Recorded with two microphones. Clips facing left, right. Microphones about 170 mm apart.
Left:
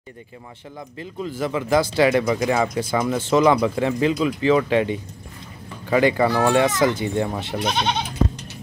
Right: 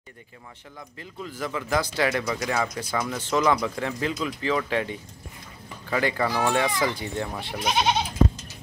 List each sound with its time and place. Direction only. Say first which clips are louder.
0.7 s speech: left 7 dB; 25° left (ahead or behind)
5.9 s speech: left 7 dB; 20° left (ahead or behind)
7.6 s goat: even; 10° right (ahead or behind)